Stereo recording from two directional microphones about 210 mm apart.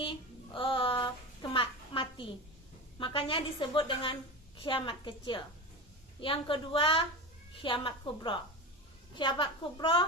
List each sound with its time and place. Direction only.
0.0 s child singing: 25° left (ahead or behind)
3.0 s a woman's voice: 25° left (ahead or behind)